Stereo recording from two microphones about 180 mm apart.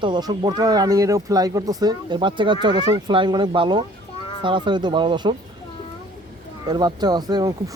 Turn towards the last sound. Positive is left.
turn(degrees=-20)  # may be behind; listen again after turning